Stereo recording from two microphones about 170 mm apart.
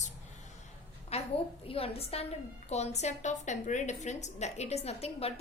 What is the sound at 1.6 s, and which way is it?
A woman's voice, 35° left (ahead or behind).